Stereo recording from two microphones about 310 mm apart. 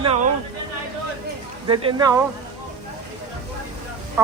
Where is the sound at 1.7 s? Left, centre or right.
Centre.